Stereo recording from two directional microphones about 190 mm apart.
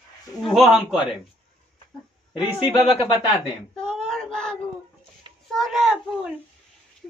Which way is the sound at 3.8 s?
5° left (ahead or behind).